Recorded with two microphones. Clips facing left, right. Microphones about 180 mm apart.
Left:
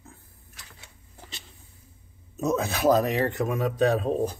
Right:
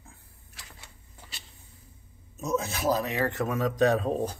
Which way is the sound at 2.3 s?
60° left (ahead or behind).